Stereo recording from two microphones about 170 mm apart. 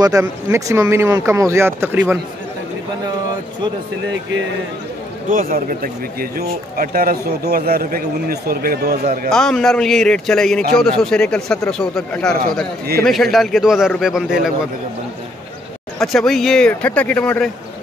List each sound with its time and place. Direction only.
0.0 s speech: 15° right (ahead or behind)
5.3 s speech: 55° right (ahead or behind)
9.3 s speech: 5° left (ahead or behind)
16.0 s speech: centre (ahead or behind)